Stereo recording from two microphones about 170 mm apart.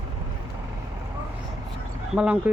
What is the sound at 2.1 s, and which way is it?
Speech, 5° right (ahead or behind).